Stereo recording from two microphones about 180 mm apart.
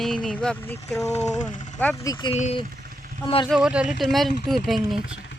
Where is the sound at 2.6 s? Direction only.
55° right (ahead or behind).